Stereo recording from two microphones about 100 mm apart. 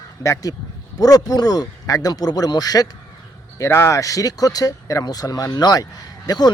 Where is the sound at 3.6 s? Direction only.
30° left (ahead or behind).